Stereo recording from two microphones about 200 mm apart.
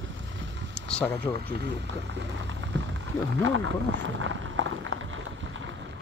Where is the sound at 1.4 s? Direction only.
55° right (ahead or behind).